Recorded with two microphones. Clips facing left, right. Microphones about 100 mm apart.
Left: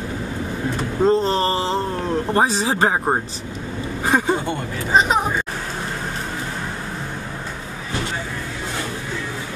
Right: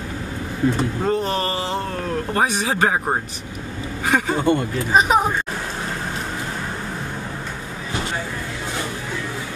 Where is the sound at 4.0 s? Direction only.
30° left (ahead or behind).